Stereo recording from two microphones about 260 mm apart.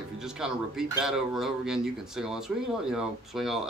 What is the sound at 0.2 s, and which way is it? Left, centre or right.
Speech, centre.